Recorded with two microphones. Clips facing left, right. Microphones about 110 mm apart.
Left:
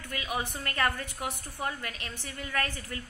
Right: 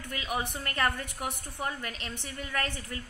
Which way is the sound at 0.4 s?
20° right (ahead or behind).